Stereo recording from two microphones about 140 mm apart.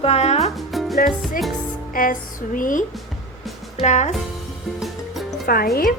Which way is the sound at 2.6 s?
75° left (ahead or behind).